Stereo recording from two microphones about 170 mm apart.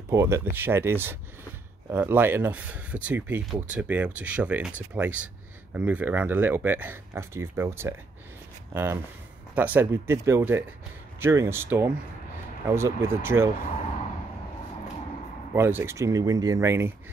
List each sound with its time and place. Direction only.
0.1 s speech: 15° right (ahead or behind)
9.6 s speech: 10° right (ahead or behind)
15.5 s speech: 15° right (ahead or behind)